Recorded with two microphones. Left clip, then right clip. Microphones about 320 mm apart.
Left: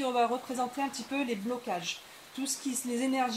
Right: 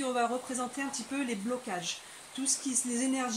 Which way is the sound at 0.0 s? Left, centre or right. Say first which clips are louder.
Left 2 dB; centre.